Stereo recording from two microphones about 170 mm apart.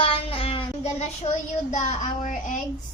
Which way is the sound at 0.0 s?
35° left (ahead or behind).